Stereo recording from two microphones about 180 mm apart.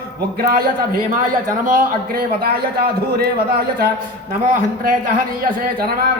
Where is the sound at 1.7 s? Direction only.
55° right (ahead or behind).